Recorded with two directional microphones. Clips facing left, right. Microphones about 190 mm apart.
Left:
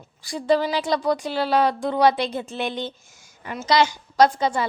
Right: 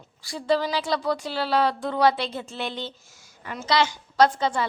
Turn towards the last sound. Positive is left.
turn(degrees=15)  # may be behind; listen again after turning